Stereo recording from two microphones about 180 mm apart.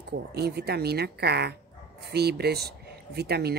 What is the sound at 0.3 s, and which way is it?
Speech, 65° right (ahead or behind).